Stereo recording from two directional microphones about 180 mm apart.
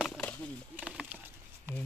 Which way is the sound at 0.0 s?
5° left (ahead or behind).